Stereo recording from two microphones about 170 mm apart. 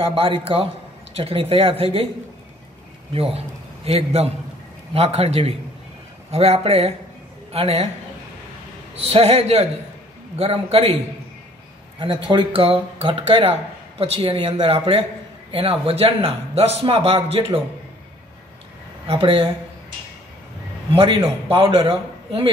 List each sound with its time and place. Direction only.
0.0 s speech: 30° right (ahead or behind)
3.1 s a man's voice: 35° right (ahead or behind)
9.1 s speech: 35° right (ahead or behind)
12.0 s speech: 30° right (ahead or behind)
19.0 s speech: 35° right (ahead or behind)
20.9 s speech: 35° right (ahead or behind)